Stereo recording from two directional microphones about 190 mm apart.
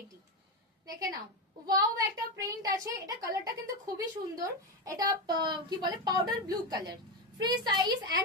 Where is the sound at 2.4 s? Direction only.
20° right (ahead or behind).